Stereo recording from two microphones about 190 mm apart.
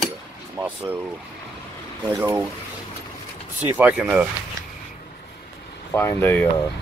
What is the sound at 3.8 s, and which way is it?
Speech, 10° right (ahead or behind).